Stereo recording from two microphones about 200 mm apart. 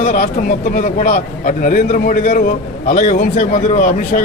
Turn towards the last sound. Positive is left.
turn(degrees=40)  # may be behind; listen again after turning